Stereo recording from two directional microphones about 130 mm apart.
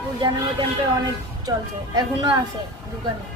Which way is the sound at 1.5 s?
30° right (ahead or behind).